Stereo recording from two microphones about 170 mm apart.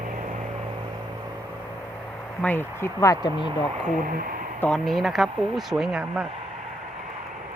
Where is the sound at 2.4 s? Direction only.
10° left (ahead or behind).